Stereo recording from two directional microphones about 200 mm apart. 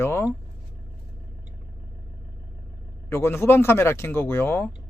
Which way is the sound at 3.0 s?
10° left (ahead or behind).